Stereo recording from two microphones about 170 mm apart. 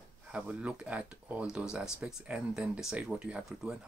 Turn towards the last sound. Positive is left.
turn(degrees=-5)  # may be behind; listen again after turning